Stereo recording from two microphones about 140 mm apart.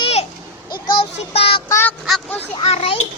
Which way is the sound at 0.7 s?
35° left (ahead or behind).